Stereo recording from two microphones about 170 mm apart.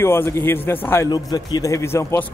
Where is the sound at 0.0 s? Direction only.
15° left (ahead or behind).